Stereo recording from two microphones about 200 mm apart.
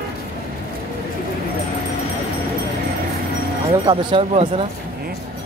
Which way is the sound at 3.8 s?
25° right (ahead or behind).